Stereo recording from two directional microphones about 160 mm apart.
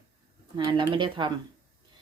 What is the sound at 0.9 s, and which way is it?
Speech, 30° right (ahead or behind).